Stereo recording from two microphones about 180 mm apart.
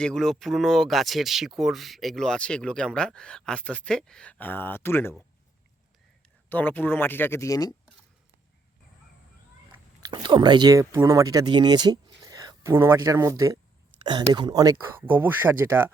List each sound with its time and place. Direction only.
0.0 s speech: 5° left (ahead or behind)
6.5 s speech: 10° left (ahead or behind)
10.0 s speech: 25° right (ahead or behind)